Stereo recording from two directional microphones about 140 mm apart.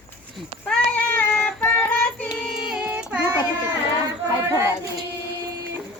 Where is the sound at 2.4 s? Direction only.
5° right (ahead or behind).